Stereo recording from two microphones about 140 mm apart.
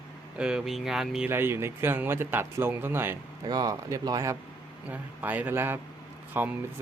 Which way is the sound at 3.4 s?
30° right (ahead or behind).